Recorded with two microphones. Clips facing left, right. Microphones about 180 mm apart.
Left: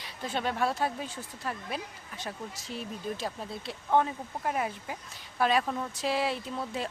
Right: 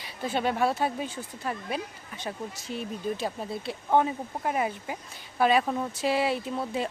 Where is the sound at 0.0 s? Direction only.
5° right (ahead or behind).